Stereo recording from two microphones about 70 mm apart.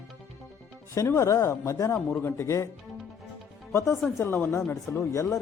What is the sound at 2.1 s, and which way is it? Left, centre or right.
Speech, left.